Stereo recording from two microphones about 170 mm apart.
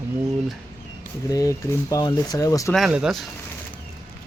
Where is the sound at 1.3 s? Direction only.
20° left (ahead or behind).